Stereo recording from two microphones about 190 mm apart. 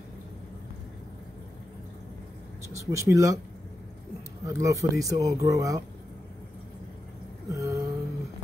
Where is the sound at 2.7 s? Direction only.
15° right (ahead or behind).